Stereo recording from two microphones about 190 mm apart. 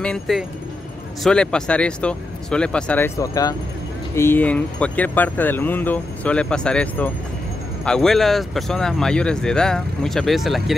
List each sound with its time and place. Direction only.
0.0 s speech: centre (ahead or behind)
3.2 s speech: 20° left (ahead or behind); by 10.8 s centre (ahead or behind)